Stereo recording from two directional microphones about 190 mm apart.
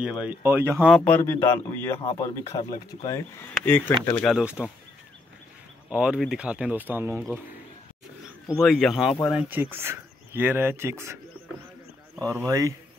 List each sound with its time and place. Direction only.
0.0 s speech: 5° right (ahead or behind)
0.9 s speech: 10° left (ahead or behind)
4.2 s speech: centre (ahead or behind)
5.9 s speech: 5° right (ahead or behind)
8.5 s speech: centre (ahead or behind)
9.1 s speech: 25° left (ahead or behind)
9.5 s speech: 10° right (ahead or behind)
12.4 s speech: 15° right (ahead or behind)